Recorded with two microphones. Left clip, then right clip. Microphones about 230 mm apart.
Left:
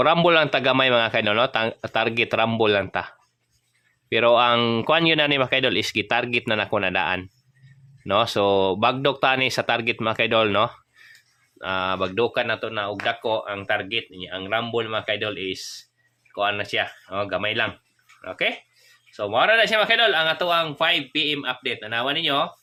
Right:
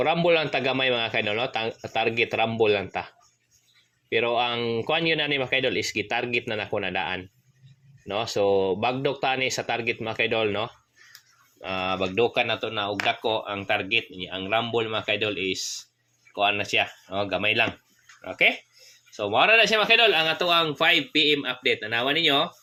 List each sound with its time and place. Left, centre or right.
0.0 s a man's voice: left
4.1 s a man's voice: left
11.6 s a man's voice: centre